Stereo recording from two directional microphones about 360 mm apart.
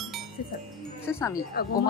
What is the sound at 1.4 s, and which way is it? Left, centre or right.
Speech, left.